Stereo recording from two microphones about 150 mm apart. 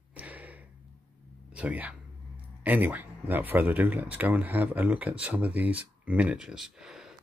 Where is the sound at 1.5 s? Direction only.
10° right (ahead or behind).